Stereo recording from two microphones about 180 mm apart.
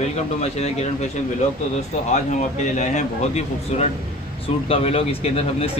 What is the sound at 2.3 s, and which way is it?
A man's voice, 40° left (ahead or behind).